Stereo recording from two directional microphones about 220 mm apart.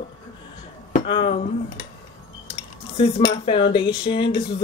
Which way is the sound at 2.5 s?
25° left (ahead or behind).